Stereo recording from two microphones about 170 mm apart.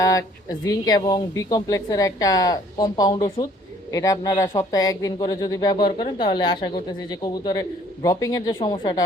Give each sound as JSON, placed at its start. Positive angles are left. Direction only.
{"t": 0.0, "sound": "speech", "side_deg": 20}